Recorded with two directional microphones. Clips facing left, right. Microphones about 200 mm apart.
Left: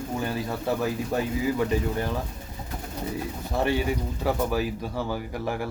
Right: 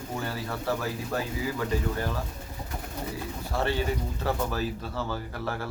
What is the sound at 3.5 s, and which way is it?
Speech, 15° left (ahead or behind).